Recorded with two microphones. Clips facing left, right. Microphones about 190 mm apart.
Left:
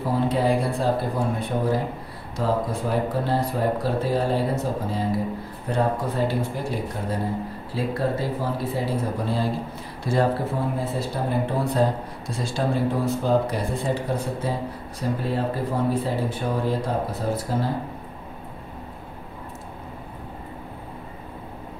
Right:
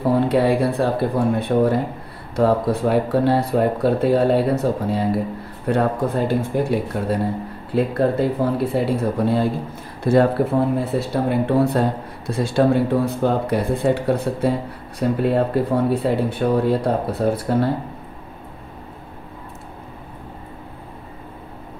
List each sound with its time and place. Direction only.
0.1 s speech: 65° right (ahead or behind)